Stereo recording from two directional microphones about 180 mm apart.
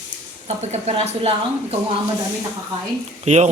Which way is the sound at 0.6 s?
35° right (ahead or behind).